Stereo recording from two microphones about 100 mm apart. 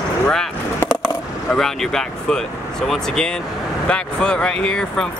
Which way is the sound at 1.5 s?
5° left (ahead or behind).